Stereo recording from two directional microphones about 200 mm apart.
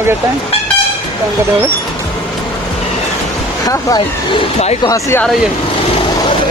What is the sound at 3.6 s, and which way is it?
Speech, 20° left (ahead or behind).